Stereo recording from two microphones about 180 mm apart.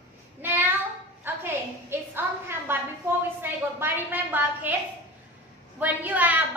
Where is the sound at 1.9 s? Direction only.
10° right (ahead or behind).